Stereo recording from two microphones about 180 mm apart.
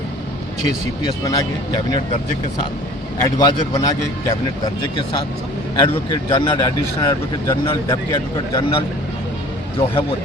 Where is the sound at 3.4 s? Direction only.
20° left (ahead or behind).